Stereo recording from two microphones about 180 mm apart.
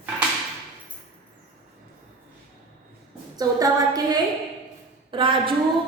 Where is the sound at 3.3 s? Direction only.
20° right (ahead or behind).